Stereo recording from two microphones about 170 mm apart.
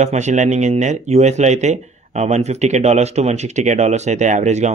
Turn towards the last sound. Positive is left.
turn(degrees=-45)  # may be behind; listen again after turning